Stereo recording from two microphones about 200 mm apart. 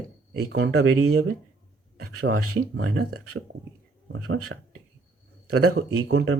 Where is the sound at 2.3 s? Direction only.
65° right (ahead or behind).